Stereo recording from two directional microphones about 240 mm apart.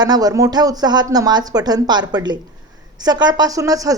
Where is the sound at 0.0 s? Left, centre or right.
Centre.